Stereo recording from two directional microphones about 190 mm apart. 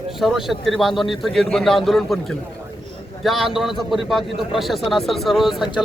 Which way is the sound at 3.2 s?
Centre (ahead or behind).